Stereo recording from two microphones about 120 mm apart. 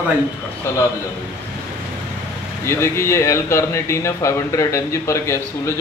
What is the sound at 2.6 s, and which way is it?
Speech, 20° left (ahead or behind).